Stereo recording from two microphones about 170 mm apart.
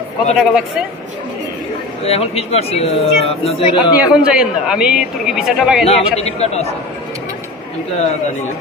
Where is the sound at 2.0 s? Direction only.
35° left (ahead or behind).